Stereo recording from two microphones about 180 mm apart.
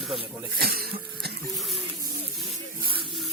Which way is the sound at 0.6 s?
60° right (ahead or behind).